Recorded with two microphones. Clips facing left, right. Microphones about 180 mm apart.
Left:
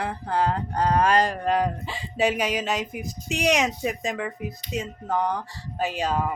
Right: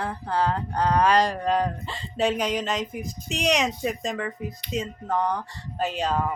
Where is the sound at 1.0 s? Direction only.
50° left (ahead or behind).